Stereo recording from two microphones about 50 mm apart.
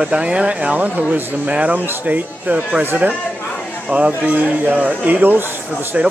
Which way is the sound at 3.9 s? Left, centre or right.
Right.